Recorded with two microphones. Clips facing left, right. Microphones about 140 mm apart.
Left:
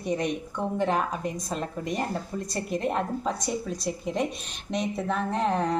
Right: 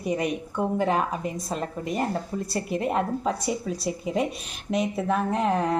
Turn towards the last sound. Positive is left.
turn(degrees=-5)  # may be behind; listen again after turning